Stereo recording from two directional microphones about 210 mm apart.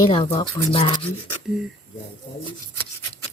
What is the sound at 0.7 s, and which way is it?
Speech, 25° left (ahead or behind).